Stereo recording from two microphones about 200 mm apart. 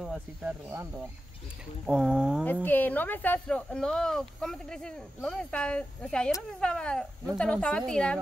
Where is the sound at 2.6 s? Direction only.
10° left (ahead or behind).